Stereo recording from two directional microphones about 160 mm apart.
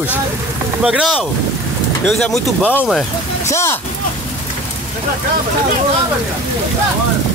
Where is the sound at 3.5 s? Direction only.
15° left (ahead or behind).